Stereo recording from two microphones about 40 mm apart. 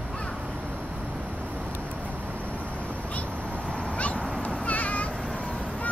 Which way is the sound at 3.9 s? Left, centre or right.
Left.